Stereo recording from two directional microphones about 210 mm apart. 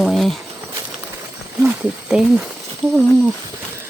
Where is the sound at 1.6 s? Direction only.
5° right (ahead or behind).